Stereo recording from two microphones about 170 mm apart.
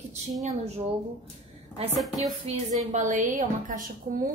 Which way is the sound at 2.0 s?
Centre (ahead or behind).